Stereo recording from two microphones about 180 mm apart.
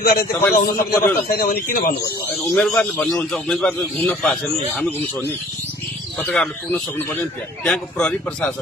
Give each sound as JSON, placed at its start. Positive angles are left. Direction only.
{"t": 0.0, "sound": "speech", "side_deg": 55}
{"t": 0.4, "sound": "a man's voice", "side_deg": 10}
{"t": 1.3, "sound": "speech", "side_deg": 55}
{"t": 2.3, "sound": "a man's voice", "side_deg": 5}
{"t": 6.1, "sound": "a man's voice", "side_deg": 5}